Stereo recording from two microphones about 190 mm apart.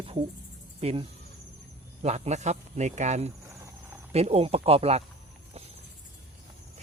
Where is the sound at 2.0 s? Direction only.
35° right (ahead or behind).